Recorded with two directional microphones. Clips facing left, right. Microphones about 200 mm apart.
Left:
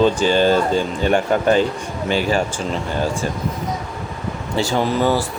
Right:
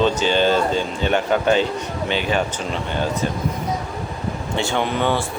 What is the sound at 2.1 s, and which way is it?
Speech, 40° left (ahead or behind).